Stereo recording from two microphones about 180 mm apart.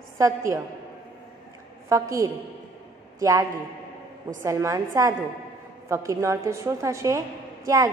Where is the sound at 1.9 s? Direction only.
15° right (ahead or behind).